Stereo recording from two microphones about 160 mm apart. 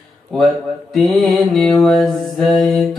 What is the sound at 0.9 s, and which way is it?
Mantra, centre (ahead or behind).